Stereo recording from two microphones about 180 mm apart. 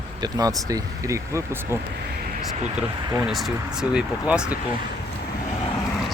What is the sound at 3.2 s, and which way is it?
Speech, centre (ahead or behind).